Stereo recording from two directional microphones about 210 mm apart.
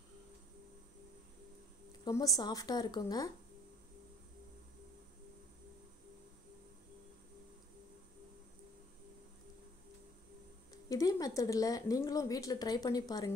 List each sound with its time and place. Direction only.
2.0 s a woman's voice: 15° left (ahead or behind)
10.9 s a woman's voice: 15° left (ahead or behind)